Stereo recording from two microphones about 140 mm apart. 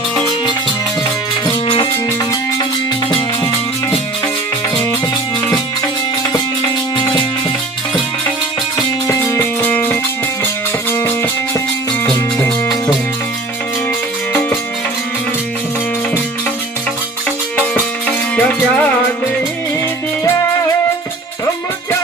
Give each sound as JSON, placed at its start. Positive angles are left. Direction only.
{"t": 1.6, "sound": "music", "side_deg": 40}
{"t": 6.9, "sound": "music", "side_deg": 35}
{"t": 9.0, "sound": "music", "side_deg": 20}
{"t": 12.0, "sound": "music", "side_deg": 5}
{"t": 18.3, "sound": "music", "side_deg": 10}